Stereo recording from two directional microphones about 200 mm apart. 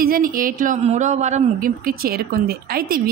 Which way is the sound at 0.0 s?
45° right (ahead or behind).